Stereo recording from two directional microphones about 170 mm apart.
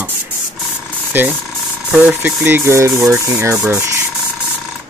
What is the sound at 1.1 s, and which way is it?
Speech, 10° right (ahead or behind).